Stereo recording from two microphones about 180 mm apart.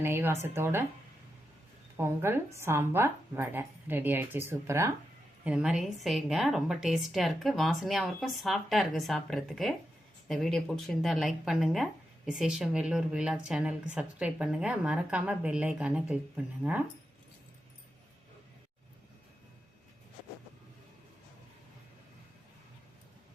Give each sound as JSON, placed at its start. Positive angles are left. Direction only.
{"t": 0.0, "sound": "speech", "side_deg": -15}
{"t": 2.0, "sound": "speech", "side_deg": -15}
{"t": 5.5, "sound": "speech", "side_deg": -5}